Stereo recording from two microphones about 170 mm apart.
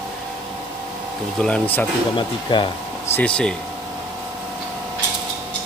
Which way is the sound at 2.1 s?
30° left (ahead or behind).